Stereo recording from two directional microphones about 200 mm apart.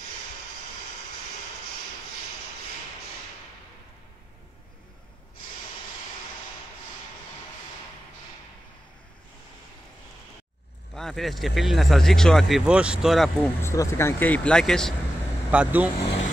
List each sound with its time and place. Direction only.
11.0 s speech: centre (ahead or behind)
13.6 s speech: 15° left (ahead or behind); by 15.9 s 5° right (ahead or behind)